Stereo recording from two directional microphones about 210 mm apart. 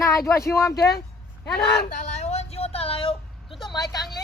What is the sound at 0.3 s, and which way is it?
Speech, 15° left (ahead or behind).